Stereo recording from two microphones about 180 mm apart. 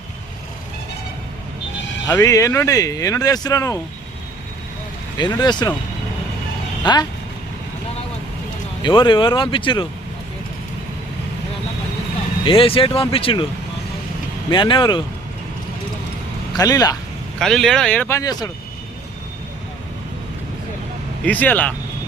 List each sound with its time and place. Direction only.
2.0 s speech: 20° left (ahead or behind)
5.4 s speech: 25° left (ahead or behind)
6.8 s speech: 25° left (ahead or behind)
8.8 s speech: 25° left (ahead or behind)
12.5 s speech: 30° left (ahead or behind)
14.5 s speech: 25° left (ahead or behind)
16.6 s speech: 20° left (ahead or behind)
17.4 s speech: centre (ahead or behind); by 18.5 s 20° left (ahead or behind)
21.2 s speech: 10° left (ahead or behind)